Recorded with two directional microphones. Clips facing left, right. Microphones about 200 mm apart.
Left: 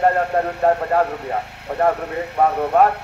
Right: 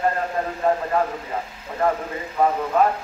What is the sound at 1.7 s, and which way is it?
Speech, 65° left (ahead or behind).